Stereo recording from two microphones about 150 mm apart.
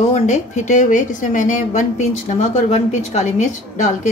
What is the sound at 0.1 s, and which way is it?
A woman's voice, 55° left (ahead or behind).